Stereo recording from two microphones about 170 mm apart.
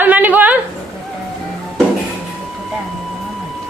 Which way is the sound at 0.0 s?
10° right (ahead or behind).